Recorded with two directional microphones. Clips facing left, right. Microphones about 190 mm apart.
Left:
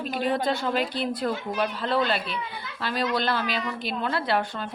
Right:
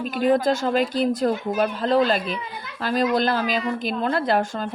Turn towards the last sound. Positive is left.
turn(degrees=-45)  # may be behind; listen again after turning